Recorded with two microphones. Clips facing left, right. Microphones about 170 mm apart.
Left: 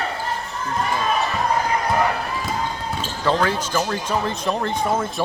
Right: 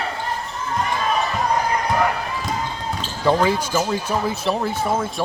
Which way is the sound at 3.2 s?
10° right (ahead or behind).